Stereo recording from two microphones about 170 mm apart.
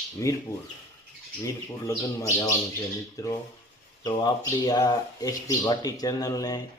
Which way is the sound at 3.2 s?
20° left (ahead or behind).